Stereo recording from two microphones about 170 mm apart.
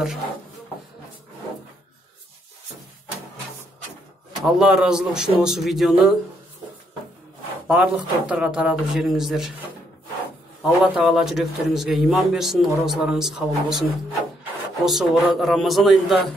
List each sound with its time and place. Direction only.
4.4 s a man's voice: 5° right (ahead or behind)
7.6 s a man's voice: 5° right (ahead or behind)
10.6 s a man's voice: 5° right (ahead or behind)
14.9 s a man's voice: centre (ahead or behind)